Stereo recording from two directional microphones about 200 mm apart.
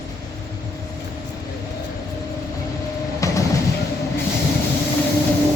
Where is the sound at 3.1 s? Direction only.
15° left (ahead or behind).